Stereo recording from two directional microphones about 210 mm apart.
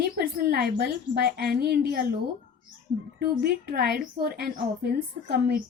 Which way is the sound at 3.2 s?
50° right (ahead or behind).